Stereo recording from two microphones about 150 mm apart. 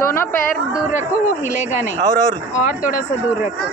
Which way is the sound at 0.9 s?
55° left (ahead or behind).